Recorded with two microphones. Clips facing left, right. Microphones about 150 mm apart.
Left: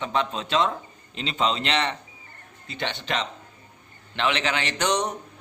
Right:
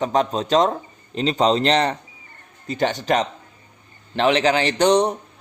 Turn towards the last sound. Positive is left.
turn(degrees=-35)  # may be behind; listen again after turning